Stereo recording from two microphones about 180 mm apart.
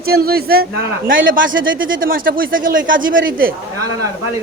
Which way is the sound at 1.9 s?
50° right (ahead or behind).